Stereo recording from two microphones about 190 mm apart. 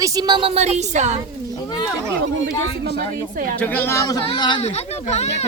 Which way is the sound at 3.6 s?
10° left (ahead or behind).